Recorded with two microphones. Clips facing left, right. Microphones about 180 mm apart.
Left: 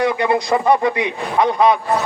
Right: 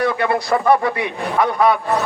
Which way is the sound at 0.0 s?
15° left (ahead or behind).